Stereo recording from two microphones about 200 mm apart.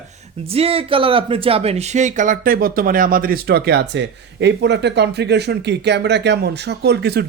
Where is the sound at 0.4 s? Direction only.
30° right (ahead or behind).